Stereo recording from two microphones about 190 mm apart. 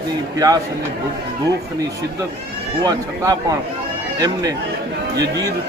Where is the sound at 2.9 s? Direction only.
20° right (ahead or behind).